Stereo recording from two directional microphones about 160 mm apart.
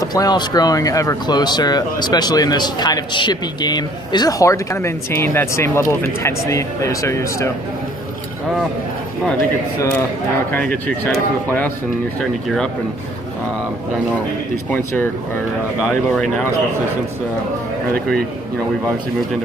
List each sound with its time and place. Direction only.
0.0 s speech: 25° left (ahead or behind)
9.8 s speech: 20° left (ahead or behind)
10.5 s speech: 10° left (ahead or behind)
14.7 s speech: 15° left (ahead or behind)